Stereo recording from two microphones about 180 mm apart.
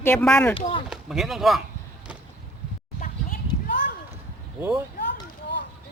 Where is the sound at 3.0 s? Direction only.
50° left (ahead or behind).